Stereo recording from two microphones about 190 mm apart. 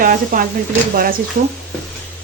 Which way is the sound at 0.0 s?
50° right (ahead or behind).